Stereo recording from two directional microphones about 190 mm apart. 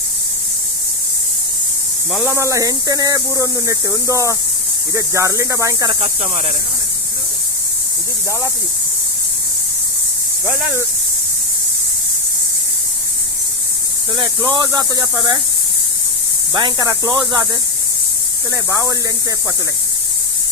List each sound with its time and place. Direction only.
2.2 s speech: 15° right (ahead or behind)
14.2 s speech: 20° right (ahead or behind)
16.6 s speech: 20° right (ahead or behind)
18.5 s speech: 15° right (ahead or behind)